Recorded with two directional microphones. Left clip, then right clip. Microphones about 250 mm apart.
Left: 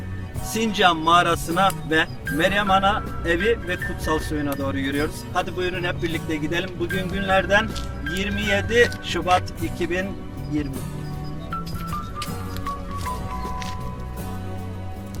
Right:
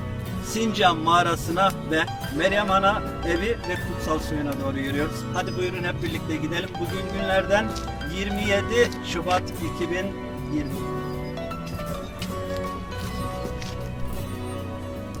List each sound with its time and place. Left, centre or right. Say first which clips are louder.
0.5 s music: left 2 dB; centre
7.3 s music: left 3 dB; centre